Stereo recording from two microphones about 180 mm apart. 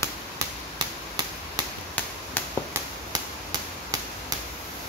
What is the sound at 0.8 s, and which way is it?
Finger snapping, 25° right (ahead or behind).